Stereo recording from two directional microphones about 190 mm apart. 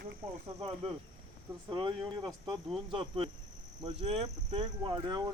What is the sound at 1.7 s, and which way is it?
Speech, 20° right (ahead or behind).